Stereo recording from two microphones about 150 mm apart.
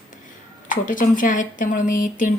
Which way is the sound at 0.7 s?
60° left (ahead or behind).